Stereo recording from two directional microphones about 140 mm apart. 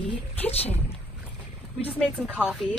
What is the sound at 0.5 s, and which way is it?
Speech, 45° left (ahead or behind).